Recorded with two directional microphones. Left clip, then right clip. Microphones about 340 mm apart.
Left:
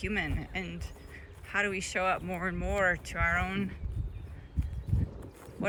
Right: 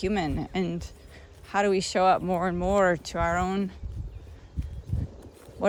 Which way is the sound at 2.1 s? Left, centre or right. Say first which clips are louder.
Right 8 dB; centre.